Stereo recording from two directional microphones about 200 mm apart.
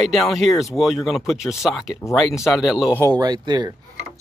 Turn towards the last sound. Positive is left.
turn(degrees=-20)  # may be behind; listen again after turning